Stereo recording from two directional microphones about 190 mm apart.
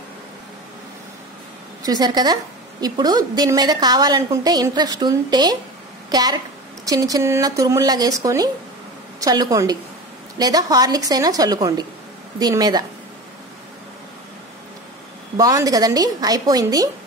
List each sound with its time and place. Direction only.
1.8 s a woman's voice: 20° right (ahead or behind)
15.3 s a woman's voice: 20° right (ahead or behind)